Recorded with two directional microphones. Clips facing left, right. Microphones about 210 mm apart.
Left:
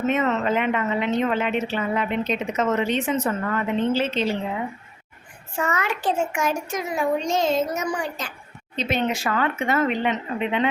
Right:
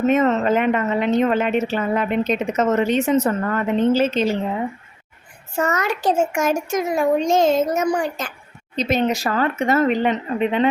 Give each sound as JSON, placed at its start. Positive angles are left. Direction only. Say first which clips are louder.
{"t": 0.1, "sound": "a woman's voice", "louder": "right 4 dB", "side_deg": -40}
{"t": 5.5, "sound": "a woman's voice", "louder": "right 4 dB", "side_deg": -40}